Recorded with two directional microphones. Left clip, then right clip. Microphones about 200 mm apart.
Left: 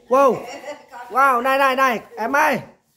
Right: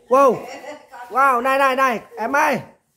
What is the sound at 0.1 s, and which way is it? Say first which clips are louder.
Speech: right 1 dB; 15° right (ahead or behind).